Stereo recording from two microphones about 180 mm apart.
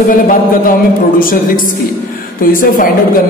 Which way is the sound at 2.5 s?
50° left (ahead or behind).